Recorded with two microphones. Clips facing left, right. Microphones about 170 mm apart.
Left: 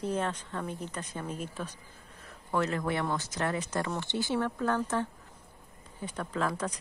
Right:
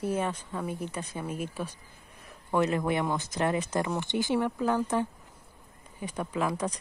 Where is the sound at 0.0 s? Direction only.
10° right (ahead or behind).